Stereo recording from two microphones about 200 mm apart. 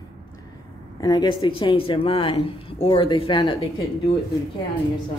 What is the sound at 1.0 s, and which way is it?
Speech, 20° left (ahead or behind).